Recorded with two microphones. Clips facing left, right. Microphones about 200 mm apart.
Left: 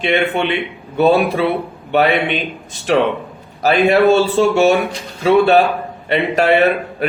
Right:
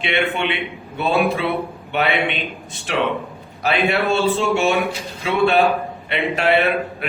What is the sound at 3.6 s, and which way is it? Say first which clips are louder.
A man's voice: left 8 dB; 40° left (ahead or behind).